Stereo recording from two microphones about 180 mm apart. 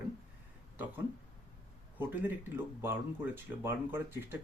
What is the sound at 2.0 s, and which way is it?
Speech, 10° right (ahead or behind).